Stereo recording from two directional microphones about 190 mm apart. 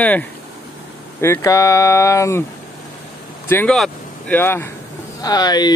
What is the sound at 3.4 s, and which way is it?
Speech, 10° left (ahead or behind).